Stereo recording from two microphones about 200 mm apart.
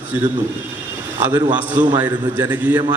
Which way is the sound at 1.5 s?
10° right (ahead or behind).